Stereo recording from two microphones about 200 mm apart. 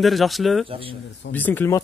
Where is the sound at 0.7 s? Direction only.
25° right (ahead or behind).